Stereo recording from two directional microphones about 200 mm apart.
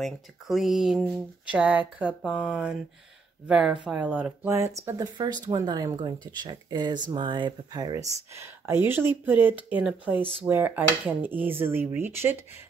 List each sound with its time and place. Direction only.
0.0 s speech: centre (ahead or behind)